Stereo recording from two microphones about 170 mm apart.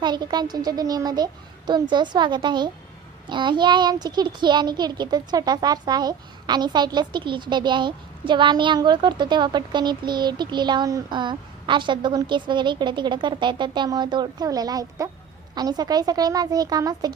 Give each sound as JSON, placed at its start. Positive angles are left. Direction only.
{"t": 0.0, "sound": "a child's voice", "side_deg": -25}